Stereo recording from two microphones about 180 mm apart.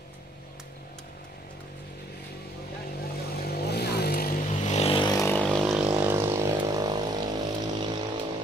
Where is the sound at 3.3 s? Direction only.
60° left (ahead or behind).